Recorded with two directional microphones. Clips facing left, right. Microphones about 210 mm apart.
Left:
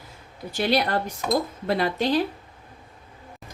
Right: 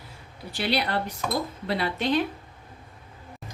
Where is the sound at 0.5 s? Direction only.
45° left (ahead or behind).